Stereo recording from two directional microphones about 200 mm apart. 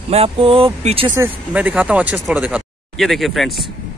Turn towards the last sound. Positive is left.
turn(degrees=0)  # may be behind; listen again after turning